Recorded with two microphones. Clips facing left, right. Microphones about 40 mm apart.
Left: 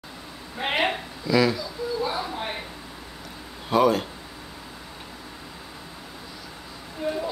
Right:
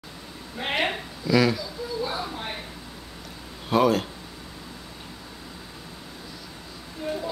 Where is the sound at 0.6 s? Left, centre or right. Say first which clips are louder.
Left 2 dB; centre.